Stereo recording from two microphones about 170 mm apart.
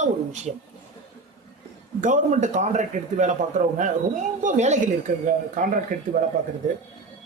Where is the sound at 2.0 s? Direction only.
45° right (ahead or behind).